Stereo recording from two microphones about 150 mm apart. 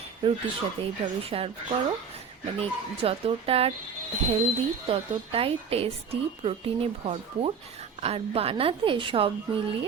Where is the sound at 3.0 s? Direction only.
40° right (ahead or behind).